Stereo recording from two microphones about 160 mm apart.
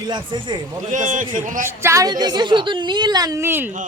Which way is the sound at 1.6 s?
15° right (ahead or behind).